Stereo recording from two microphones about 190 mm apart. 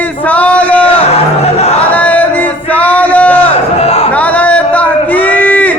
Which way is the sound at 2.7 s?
10° left (ahead or behind).